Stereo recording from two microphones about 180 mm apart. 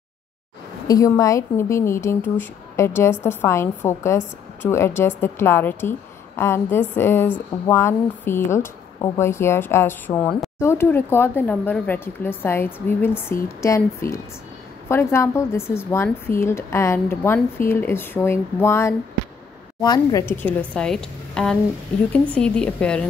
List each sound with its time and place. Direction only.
0.8 s a woman's voice: 20° left (ahead or behind)